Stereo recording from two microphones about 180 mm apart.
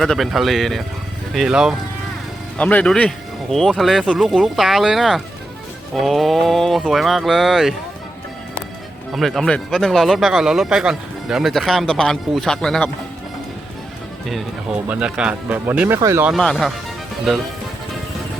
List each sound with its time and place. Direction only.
0.0 s speech: centre (ahead or behind)
2.6 s speech: 5° left (ahead or behind)
9.1 s speech: centre (ahead or behind)
14.3 s speech: centre (ahead or behind)
16.3 s speech: centre (ahead or behind)